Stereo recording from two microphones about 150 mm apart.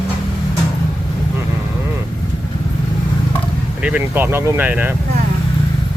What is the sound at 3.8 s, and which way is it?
Speech, 10° right (ahead or behind).